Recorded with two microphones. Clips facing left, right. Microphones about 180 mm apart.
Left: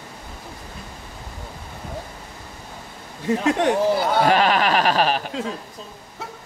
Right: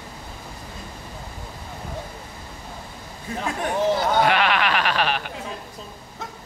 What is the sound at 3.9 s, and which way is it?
Speech, 5° left (ahead or behind).